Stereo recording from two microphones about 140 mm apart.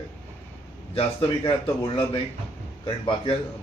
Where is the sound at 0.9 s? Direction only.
40° left (ahead or behind).